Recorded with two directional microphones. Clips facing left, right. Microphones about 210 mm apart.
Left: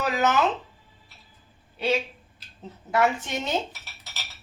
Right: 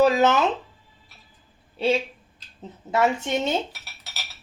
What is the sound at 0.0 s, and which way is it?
Speech, 25° right (ahead or behind).